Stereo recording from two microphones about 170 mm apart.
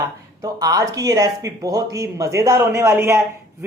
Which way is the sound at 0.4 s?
20° right (ahead or behind).